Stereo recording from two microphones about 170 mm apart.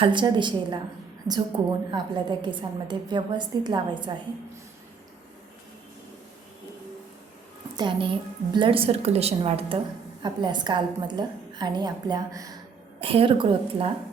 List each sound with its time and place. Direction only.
0.0 s a woman's voice: 25° right (ahead or behind)
7.8 s a woman's voice: 30° right (ahead or behind)
13.0 s a woman's voice: 30° right (ahead or behind)